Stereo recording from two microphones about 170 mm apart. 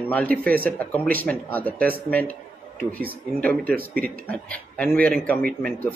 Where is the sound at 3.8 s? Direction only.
60° right (ahead or behind).